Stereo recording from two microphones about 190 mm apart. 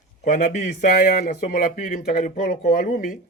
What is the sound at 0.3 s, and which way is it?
Speech, 45° left (ahead or behind).